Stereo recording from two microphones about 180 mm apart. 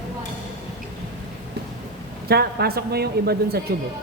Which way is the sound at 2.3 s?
60° right (ahead or behind).